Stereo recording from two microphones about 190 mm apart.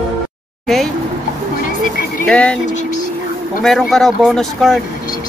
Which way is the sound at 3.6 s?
Centre (ahead or behind).